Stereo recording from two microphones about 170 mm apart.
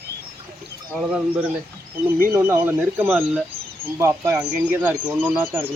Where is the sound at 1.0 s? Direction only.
5° right (ahead or behind).